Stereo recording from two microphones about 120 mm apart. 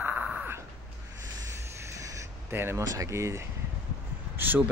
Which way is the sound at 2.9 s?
25° right (ahead or behind).